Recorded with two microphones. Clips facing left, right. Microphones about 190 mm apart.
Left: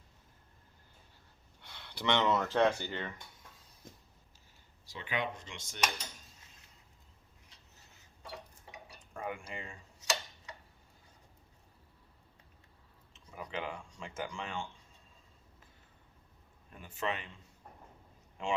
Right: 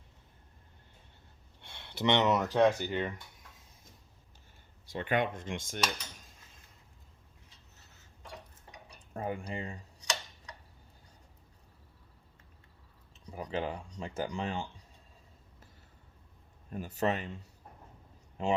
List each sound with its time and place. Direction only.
1.6 s speech: 25° right (ahead or behind)
4.9 s speech: 55° right (ahead or behind)
9.1 s speech: 35° right (ahead or behind)
10.0 s tick-tock: 5° left (ahead or behind)
13.1 s speech: 35° right (ahead or behind)
16.6 s speech: 40° right (ahead or behind)